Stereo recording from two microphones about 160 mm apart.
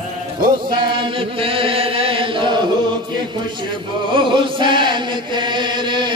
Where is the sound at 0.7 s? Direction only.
30° right (ahead or behind).